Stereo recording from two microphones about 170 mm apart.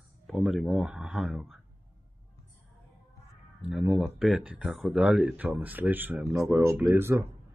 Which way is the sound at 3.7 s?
5° right (ahead or behind).